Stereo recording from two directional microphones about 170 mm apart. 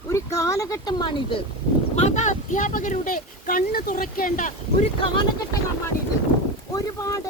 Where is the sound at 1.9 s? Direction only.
40° left (ahead or behind).